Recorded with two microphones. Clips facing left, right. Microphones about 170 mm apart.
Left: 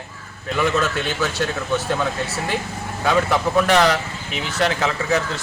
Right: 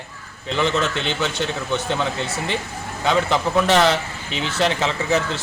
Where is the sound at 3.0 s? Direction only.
25° right (ahead or behind).